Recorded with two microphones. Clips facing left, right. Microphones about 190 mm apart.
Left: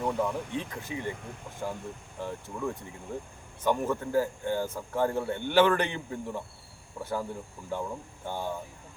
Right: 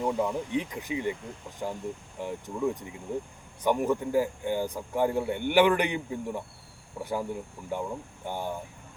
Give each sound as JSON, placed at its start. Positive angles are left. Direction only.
{"t": 0.0, "sound": "a man's voice", "side_deg": -15}